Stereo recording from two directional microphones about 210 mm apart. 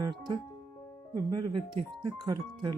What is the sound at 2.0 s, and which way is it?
Speech, 20° right (ahead or behind).